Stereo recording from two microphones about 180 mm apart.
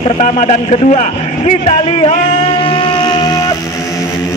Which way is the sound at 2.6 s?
30° left (ahead or behind).